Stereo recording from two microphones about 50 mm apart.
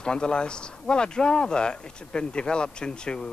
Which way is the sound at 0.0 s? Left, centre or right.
Centre.